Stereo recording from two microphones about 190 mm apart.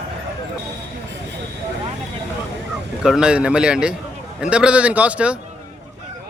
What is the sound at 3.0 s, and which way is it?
A man's voice, 5° right (ahead or behind).